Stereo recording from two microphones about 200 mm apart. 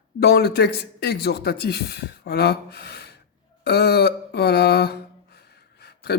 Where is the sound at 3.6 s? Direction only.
55° left (ahead or behind).